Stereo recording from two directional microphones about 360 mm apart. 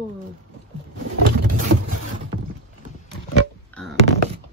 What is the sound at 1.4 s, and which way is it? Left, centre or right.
Vehicle, right.